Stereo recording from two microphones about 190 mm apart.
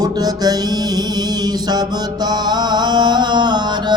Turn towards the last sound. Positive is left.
turn(degrees=-25)  # may be behind; listen again after turning